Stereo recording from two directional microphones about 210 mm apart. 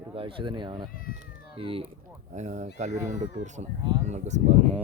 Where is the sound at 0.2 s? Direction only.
25° right (ahead or behind).